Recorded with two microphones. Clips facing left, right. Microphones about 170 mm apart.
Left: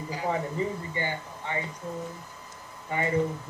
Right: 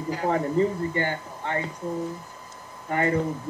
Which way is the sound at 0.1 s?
55° right (ahead or behind).